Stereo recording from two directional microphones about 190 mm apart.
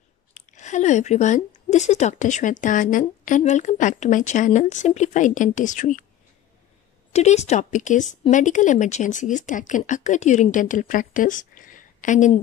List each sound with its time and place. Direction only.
0.3 s speech: 40° left (ahead or behind)
7.1 s speech: 35° left (ahead or behind)